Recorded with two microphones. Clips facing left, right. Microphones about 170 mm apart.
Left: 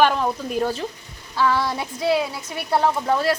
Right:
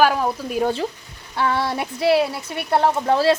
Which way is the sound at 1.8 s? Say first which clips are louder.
Right 3 dB; 65° right (ahead or behind).